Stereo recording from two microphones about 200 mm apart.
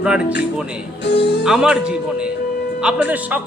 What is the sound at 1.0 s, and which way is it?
Speech, 60° left (ahead or behind).